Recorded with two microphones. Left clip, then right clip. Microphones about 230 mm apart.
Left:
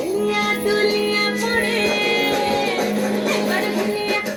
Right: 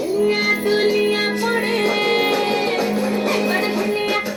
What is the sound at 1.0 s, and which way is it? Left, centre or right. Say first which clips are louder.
Music: right 1 dB; right.